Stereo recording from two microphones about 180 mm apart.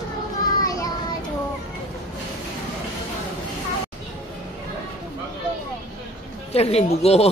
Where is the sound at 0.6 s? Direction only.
20° left (ahead or behind).